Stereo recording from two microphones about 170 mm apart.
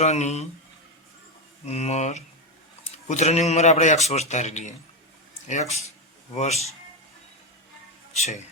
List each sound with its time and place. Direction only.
0.0 s speech: 40° left (ahead or behind)
1.6 s a man's voice: 40° left (ahead or behind)
8.1 s speech: 40° left (ahead or behind)